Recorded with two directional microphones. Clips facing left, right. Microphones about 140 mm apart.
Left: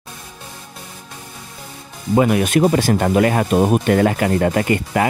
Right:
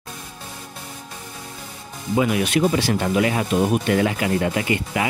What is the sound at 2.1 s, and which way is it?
Speech, 50° left (ahead or behind).